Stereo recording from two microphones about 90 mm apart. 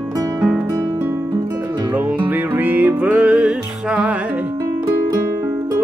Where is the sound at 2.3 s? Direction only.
20° right (ahead or behind).